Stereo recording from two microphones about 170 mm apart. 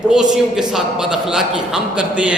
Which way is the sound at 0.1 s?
5° right (ahead or behind).